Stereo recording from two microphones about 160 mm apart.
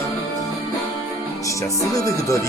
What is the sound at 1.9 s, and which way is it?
Music, 20° left (ahead or behind).